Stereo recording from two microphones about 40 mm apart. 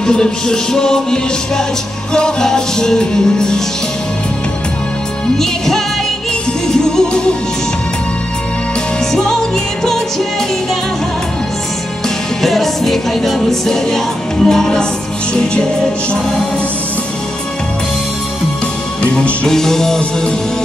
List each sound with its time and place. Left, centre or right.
0.0 s music: centre
6.7 s music: centre
9.1 s music: centre
12.4 s music: centre
19.4 s music: centre